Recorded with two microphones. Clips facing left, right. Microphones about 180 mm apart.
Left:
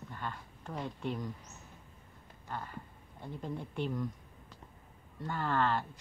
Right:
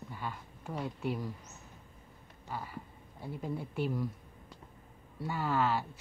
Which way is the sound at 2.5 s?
5° right (ahead or behind).